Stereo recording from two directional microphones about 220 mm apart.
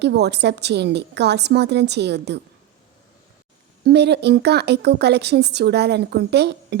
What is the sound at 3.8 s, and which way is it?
Speech, 50° right (ahead or behind).